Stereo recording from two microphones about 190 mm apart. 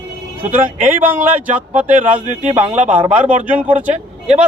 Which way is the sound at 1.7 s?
35° right (ahead or behind).